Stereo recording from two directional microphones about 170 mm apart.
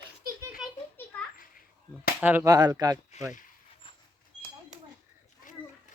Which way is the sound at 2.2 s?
15° right (ahead or behind).